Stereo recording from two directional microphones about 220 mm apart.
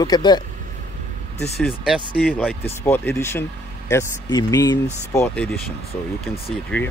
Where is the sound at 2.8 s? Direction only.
10° left (ahead or behind).